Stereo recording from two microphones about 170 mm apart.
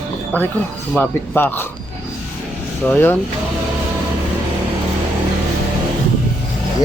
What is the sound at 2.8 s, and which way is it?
Speech, 10° left (ahead or behind).